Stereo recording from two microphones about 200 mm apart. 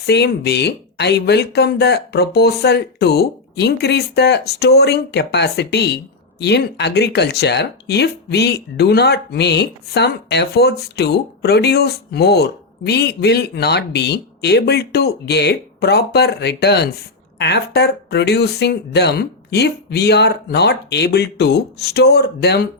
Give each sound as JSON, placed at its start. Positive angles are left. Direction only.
{"t": 0.0, "sound": "speech", "side_deg": 55}